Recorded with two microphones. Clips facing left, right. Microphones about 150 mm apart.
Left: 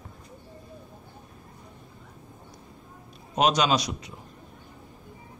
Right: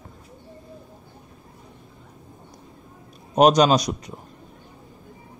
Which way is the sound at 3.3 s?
45° right (ahead or behind).